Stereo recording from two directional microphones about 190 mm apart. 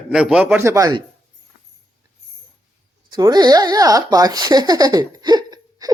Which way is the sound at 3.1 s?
20° right (ahead or behind).